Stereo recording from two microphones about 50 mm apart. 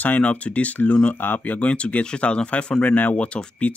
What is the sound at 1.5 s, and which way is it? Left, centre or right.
Speech, left.